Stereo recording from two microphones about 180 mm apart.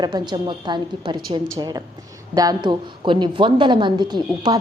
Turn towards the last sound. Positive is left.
turn(degrees=-25)  # may be behind; listen again after turning